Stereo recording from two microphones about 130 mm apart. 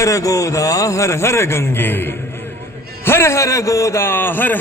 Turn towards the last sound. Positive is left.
turn(degrees=15)  # may be behind; listen again after turning